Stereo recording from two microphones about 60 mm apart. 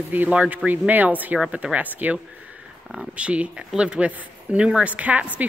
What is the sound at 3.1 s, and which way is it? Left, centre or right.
Speech, centre.